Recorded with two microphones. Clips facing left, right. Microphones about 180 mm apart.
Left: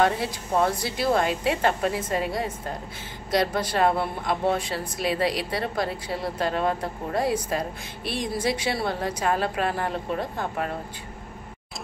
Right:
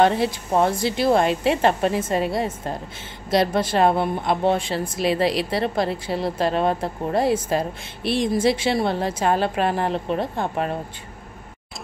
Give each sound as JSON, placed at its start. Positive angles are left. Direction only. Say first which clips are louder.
{"t": 0.0, "sound": "a woman's voice", "louder": "right 5 dB", "side_deg": -25}